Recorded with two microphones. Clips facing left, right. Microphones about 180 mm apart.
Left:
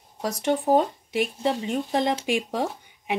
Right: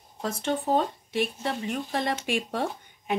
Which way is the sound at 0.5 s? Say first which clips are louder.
Left 5 dB; 15° left (ahead or behind).